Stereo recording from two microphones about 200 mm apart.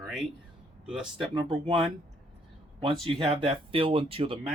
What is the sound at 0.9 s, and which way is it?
Speech, 5° right (ahead or behind).